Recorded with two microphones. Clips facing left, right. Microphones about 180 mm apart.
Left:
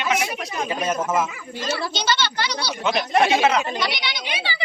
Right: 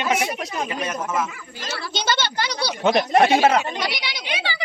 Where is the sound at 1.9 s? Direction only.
50° right (ahead or behind).